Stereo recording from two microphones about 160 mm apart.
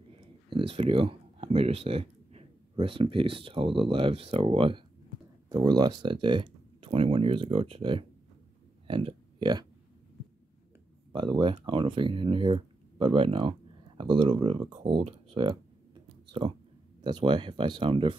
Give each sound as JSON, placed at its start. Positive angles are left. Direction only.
{"t": 0.2, "sound": "speech", "side_deg": -35}
{"t": 11.1, "sound": "speech", "side_deg": -30}